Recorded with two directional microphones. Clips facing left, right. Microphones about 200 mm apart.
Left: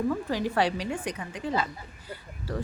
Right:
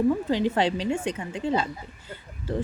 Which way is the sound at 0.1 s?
25° right (ahead or behind).